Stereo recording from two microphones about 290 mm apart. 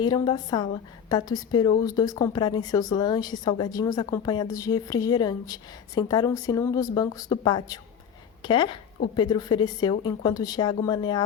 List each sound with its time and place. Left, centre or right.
0.0 s a woman's voice: centre